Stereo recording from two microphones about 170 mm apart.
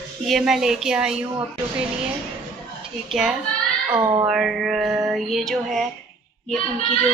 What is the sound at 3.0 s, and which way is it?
Female singing, 5° right (ahead or behind).